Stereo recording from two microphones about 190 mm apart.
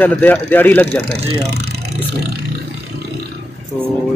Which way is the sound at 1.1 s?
60° right (ahead or behind).